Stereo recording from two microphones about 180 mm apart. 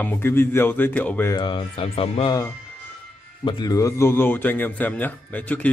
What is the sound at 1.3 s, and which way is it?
Speech, 25° left (ahead or behind).